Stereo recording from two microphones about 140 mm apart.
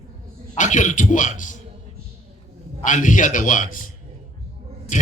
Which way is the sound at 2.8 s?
65° left (ahead or behind).